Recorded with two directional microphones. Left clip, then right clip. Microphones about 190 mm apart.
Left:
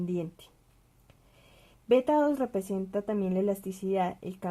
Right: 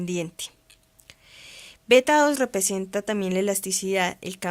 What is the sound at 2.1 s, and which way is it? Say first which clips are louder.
Speech: right 6 dB; 50° right (ahead or behind).